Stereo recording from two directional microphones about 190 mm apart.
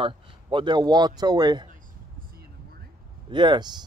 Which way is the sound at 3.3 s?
25° right (ahead or behind).